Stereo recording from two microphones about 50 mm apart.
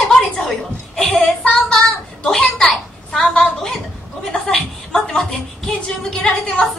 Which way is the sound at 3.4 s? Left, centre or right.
Centre.